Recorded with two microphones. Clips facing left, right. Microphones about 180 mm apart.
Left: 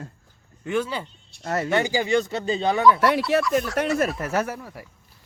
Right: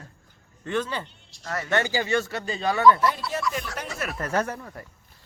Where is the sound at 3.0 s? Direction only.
75° left (ahead or behind).